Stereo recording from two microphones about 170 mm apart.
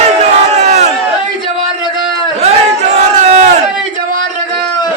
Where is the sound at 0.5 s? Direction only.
40° right (ahead or behind).